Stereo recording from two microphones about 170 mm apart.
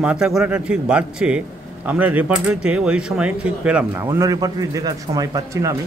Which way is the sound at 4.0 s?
20° right (ahead or behind).